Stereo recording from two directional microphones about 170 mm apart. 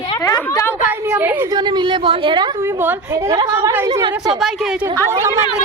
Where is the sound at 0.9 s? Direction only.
10° right (ahead or behind).